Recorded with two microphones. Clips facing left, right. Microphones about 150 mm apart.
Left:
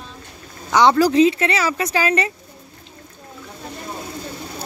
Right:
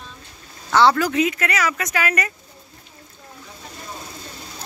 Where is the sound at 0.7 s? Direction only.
15° left (ahead or behind).